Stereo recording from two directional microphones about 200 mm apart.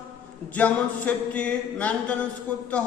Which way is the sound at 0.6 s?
5° left (ahead or behind).